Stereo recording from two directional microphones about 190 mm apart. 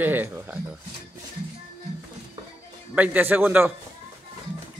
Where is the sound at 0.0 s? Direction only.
10° right (ahead or behind).